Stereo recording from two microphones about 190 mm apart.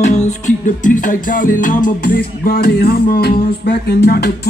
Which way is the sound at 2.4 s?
55° left (ahead or behind).